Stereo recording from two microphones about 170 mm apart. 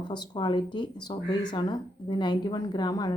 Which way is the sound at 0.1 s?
25° left (ahead or behind).